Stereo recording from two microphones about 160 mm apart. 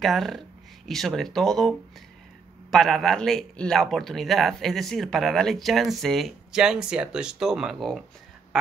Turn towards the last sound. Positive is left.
turn(degrees=0)  # may be behind; listen again after turning